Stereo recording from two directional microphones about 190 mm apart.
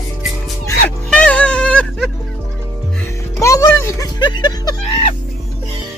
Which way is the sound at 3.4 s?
15° left (ahead or behind).